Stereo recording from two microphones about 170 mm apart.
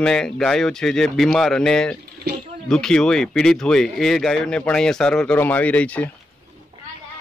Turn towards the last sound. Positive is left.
turn(degrees=10)  # may be behind; listen again after turning